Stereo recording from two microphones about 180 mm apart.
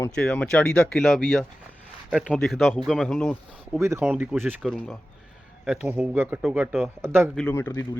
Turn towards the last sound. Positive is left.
turn(degrees=15)  # may be behind; listen again after turning